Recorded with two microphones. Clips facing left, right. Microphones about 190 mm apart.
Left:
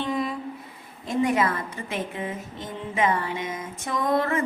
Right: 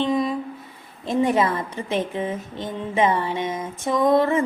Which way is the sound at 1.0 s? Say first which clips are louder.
Right 3 dB; 25° right (ahead or behind).